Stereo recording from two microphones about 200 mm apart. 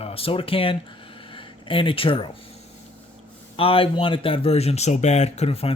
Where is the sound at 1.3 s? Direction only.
25° left (ahead or behind).